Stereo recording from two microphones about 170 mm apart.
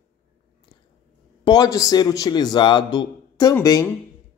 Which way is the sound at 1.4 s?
25° left (ahead or behind).